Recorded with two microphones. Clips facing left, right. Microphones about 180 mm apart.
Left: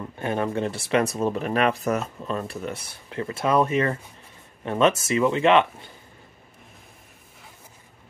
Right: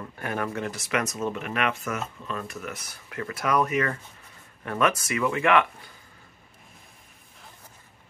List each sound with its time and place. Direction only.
0.2 s speech: 25° left (ahead or behind)